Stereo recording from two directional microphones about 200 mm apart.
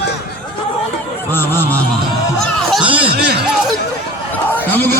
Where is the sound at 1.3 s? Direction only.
10° left (ahead or behind).